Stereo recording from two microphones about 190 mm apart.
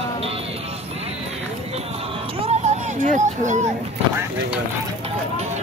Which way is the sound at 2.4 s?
35° right (ahead or behind).